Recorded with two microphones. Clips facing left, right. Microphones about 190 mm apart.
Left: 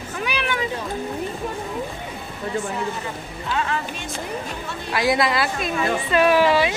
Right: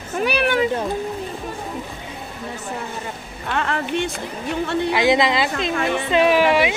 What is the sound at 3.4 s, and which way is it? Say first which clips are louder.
Speech: right 2 dB; 60° right (ahead or behind).